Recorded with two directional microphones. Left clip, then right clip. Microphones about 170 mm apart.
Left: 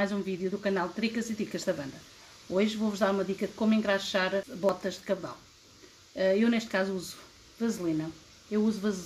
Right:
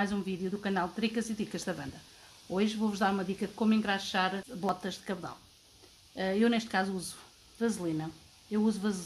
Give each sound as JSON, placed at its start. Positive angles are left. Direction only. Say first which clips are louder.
{"t": 0.0, "sound": "speech", "louder": "left 3 dB", "side_deg": -45}